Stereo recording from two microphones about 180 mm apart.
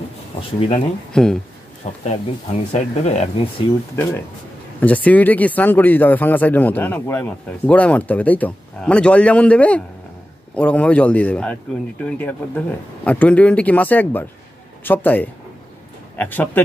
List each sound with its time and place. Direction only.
0.4 s speech: 30° left (ahead or behind)
1.1 s speech: 5° left (ahead or behind)
1.8 s speech: 40° left (ahead or behind)
3.9 s speech: 15° left (ahead or behind)